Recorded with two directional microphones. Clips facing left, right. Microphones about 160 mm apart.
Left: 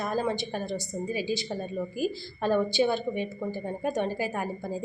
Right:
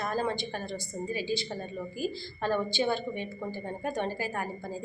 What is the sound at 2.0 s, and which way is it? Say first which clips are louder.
A woman's voice: left 2 dB; 15° left (ahead or behind).